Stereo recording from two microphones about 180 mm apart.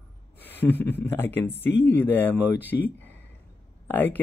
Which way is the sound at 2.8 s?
10° left (ahead or behind).